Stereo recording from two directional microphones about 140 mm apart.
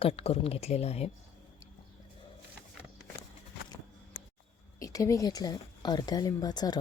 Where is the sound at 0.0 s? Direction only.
45° left (ahead or behind).